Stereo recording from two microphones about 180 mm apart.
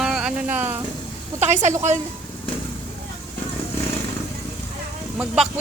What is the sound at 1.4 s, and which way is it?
Speech, 40° right (ahead or behind).